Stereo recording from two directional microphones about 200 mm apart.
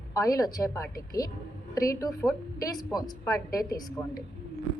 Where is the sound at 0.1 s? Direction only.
15° left (ahead or behind).